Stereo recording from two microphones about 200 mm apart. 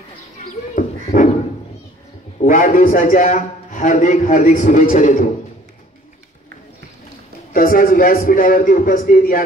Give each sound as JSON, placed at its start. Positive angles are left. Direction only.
{"t": 0.7, "sound": "beatboxing", "side_deg": 40}
{"t": 2.4, "sound": "a man's voice", "side_deg": 40}
{"t": 7.5, "sound": "a man's voice", "side_deg": 45}